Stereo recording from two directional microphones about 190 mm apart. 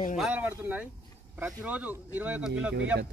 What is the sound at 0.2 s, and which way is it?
Speech, 5° right (ahead or behind).